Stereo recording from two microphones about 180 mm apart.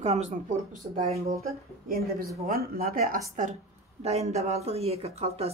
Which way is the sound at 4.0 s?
35° right (ahead or behind).